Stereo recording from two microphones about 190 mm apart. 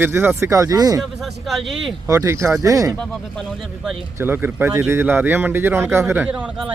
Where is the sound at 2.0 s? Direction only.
15° right (ahead or behind).